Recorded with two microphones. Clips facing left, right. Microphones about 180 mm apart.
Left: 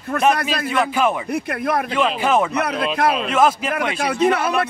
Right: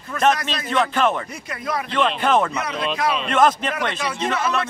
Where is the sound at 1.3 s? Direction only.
60° left (ahead or behind).